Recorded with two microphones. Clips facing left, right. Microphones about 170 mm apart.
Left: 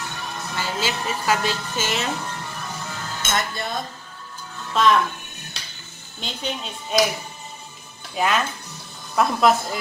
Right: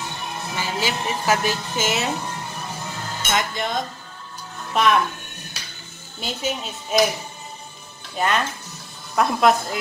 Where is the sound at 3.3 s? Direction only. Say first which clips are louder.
Right 2 dB; 20° right (ahead or behind).